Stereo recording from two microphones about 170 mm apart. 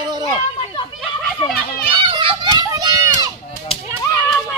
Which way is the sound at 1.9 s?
30° right (ahead or behind).